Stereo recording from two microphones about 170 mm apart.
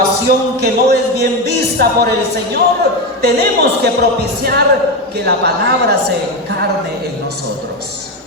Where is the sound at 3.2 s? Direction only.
70° right (ahead or behind).